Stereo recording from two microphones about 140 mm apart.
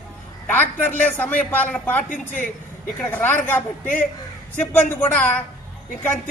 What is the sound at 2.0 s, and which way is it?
Speech, 65° left (ahead or behind).